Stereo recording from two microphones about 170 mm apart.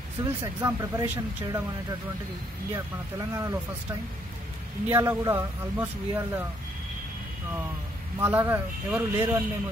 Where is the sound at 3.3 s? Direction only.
15° right (ahead or behind).